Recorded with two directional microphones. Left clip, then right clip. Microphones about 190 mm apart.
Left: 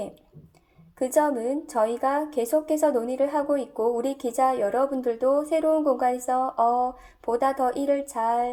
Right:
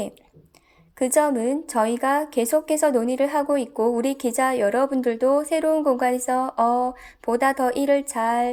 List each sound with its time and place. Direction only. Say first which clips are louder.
1.0 s a woman's voice: right 3 dB; 30° right (ahead or behind)